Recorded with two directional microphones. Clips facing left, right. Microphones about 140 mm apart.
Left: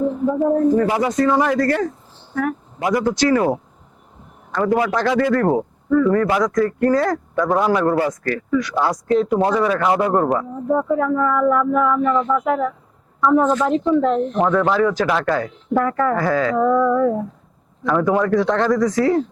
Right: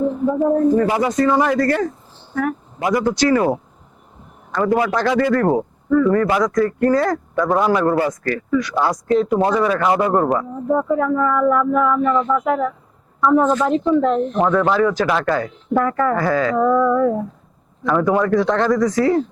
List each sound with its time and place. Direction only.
0.0 s a man's voice: 25° right (ahead or behind)